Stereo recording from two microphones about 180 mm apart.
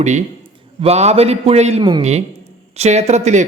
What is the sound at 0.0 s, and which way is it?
A man's voice, 40° right (ahead or behind).